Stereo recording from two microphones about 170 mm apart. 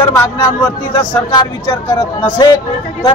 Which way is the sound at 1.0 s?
25° left (ahead or behind).